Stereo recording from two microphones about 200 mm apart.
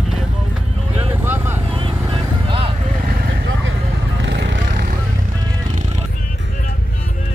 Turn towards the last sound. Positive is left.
turn(degrees=-40)  # may be behind; listen again after turning